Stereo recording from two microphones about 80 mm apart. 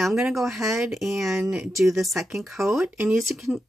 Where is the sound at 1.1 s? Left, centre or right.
Right.